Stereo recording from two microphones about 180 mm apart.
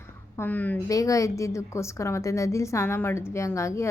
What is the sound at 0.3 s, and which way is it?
A woman's voice, 10° left (ahead or behind).